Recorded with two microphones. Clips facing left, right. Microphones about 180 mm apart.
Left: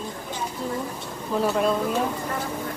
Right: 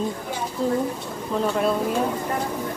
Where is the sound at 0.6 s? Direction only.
40° right (ahead or behind).